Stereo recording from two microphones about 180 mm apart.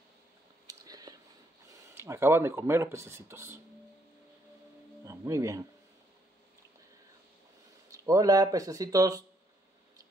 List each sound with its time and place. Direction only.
0.7 s a sound: 20° right (ahead or behind)
2.0 s speech: 15° right (ahead or behind)
5.0 s speech: 15° right (ahead or behind)
7.9 s speech: 20° right (ahead or behind)